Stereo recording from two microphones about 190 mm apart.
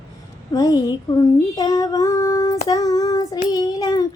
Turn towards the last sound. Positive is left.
turn(degrees=20)  # may be behind; listen again after turning